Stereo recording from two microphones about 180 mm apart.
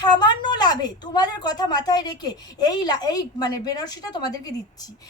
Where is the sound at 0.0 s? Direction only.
25° left (ahead or behind).